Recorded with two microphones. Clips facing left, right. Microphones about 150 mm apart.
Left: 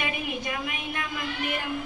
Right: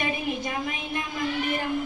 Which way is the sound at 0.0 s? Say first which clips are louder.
Right 3 dB; 35° right (ahead or behind).